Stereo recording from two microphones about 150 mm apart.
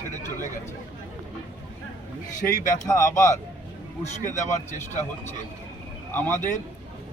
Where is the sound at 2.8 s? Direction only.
20° left (ahead or behind).